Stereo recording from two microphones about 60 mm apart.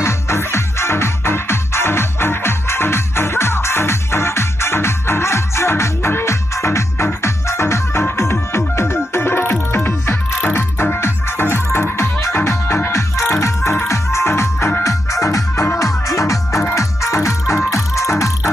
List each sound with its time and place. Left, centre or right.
0.0 s music: left
14.8 s music: left
16.1 s music: left